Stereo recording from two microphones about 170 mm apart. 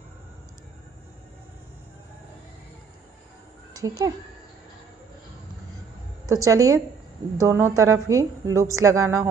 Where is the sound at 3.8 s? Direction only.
20° right (ahead or behind).